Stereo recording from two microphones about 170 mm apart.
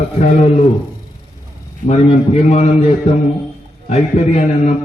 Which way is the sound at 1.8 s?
40° left (ahead or behind).